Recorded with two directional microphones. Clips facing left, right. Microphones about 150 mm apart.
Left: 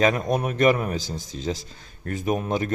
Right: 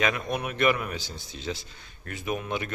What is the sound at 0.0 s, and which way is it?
A man's voice, 40° left (ahead or behind).